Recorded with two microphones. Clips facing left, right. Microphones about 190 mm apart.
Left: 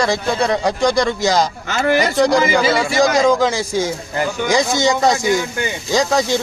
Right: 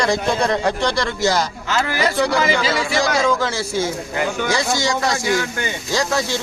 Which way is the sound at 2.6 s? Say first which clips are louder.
Left 4 dB; 55° left (ahead or behind).